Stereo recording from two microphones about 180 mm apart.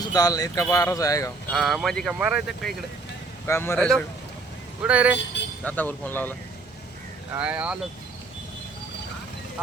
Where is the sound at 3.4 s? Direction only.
15° left (ahead or behind).